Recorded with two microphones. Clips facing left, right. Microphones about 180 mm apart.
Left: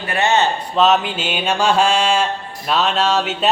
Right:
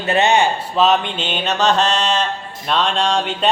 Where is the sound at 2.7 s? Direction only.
5° left (ahead or behind).